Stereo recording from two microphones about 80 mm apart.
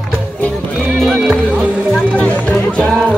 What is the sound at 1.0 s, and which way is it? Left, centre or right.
Music, centre.